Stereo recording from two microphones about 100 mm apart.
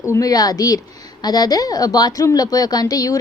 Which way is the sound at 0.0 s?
35° left (ahead or behind).